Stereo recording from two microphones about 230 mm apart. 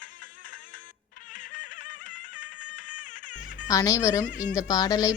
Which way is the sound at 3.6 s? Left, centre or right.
Centre.